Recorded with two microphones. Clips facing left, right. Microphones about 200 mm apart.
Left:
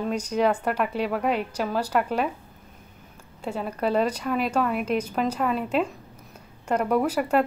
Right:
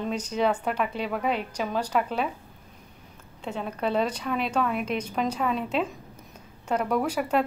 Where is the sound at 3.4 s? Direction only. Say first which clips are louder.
Left 2 dB; 5° left (ahead or behind).